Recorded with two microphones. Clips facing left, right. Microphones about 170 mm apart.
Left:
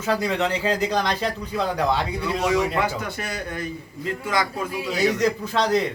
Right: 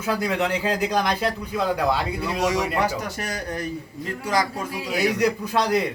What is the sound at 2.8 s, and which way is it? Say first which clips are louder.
Speech: right 1 dB; 40° right (ahead or behind).